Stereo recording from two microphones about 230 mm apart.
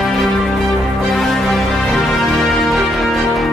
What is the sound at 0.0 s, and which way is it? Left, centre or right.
Music, centre.